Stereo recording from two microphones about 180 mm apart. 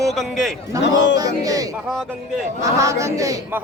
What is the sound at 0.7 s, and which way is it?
A man's voice, 20° right (ahead or behind).